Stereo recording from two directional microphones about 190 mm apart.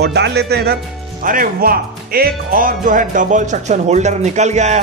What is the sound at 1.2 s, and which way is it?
Speech, 45° right (ahead or behind).